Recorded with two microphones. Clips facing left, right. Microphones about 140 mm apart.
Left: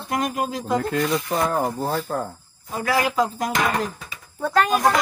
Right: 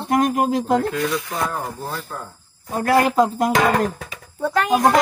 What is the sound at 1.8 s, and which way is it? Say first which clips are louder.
Speech: left 6 dB; 45° left (ahead or behind).